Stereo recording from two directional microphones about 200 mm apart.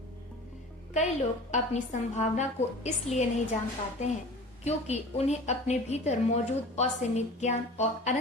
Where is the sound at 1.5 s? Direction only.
35° left (ahead or behind).